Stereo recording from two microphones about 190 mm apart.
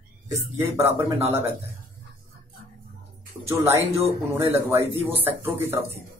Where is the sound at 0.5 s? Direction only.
15° right (ahead or behind).